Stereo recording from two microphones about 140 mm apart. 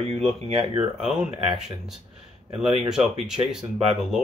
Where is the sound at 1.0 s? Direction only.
5° right (ahead or behind).